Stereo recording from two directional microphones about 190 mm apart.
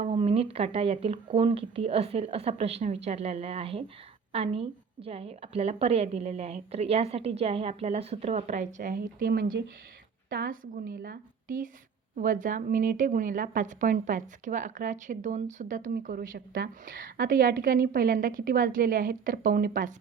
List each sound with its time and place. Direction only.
0.0 s a woman's voice: 35° right (ahead or behind)